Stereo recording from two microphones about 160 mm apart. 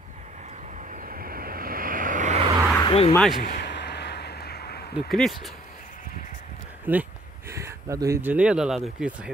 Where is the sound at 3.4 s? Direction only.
75° left (ahead or behind).